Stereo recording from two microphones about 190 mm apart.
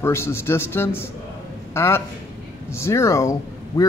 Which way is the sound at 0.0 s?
15° left (ahead or behind).